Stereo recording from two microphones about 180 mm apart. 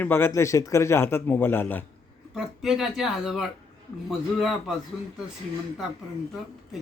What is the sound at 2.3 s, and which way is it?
Speech, centre (ahead or behind).